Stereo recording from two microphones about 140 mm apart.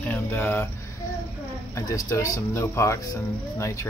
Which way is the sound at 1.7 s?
25° left (ahead or behind).